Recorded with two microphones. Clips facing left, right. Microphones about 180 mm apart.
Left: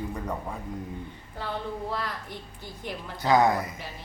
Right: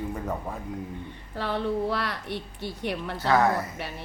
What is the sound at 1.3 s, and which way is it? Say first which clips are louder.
A woman's voice: right 6 dB; 75° right (ahead or behind).